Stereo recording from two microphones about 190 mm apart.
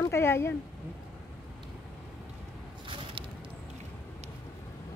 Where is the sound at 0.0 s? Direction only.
15° left (ahead or behind).